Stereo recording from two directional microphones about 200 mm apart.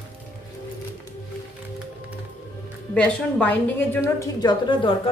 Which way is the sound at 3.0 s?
5° left (ahead or behind).